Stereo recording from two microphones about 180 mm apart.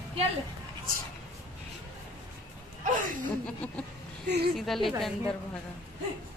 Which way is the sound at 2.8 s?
50° right (ahead or behind).